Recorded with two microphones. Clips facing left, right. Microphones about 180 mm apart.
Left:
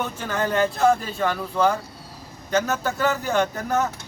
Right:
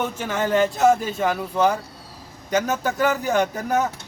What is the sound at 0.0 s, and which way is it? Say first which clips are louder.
Speech: right 2 dB; 20° right (ahead or behind).